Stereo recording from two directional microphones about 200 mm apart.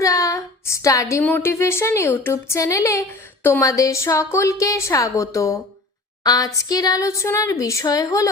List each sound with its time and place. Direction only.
0.0 s speech: 15° left (ahead or behind)